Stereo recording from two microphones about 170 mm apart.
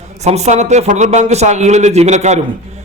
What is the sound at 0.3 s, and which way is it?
A man's voice, 40° right (ahead or behind).